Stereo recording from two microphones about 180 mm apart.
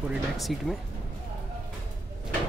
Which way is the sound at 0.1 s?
Centre (ahead or behind).